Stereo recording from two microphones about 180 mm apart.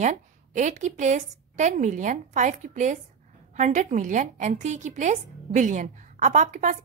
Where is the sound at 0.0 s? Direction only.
40° right (ahead or behind).